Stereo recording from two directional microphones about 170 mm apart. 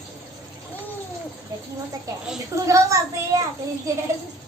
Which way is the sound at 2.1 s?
20° right (ahead or behind).